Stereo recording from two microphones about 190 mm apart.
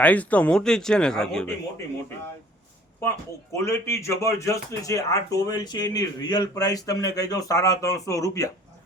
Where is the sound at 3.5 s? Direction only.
15° left (ahead or behind).